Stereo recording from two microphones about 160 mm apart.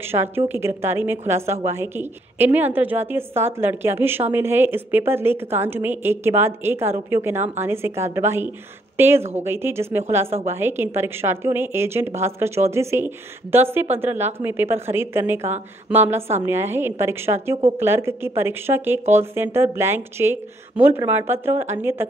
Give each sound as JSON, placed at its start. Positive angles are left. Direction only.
{"t": 0.0, "sound": "a woman's voice", "side_deg": -15}